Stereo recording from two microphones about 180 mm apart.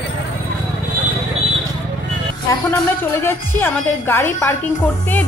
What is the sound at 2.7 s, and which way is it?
A woman's voice, 15° left (ahead or behind).